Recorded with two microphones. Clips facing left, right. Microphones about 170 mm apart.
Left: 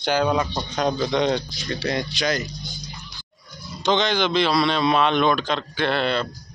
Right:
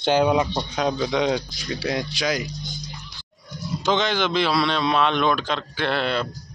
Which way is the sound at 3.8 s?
5° right (ahead or behind).